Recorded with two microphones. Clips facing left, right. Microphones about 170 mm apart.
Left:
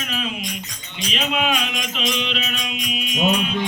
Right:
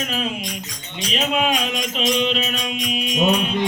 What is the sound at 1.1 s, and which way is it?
Music, 40° right (ahead or behind).